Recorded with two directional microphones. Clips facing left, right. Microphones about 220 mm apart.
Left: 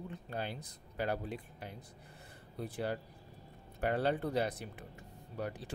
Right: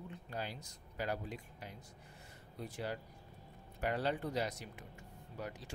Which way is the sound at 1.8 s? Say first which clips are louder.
Left 2 dB; 30° left (ahead or behind).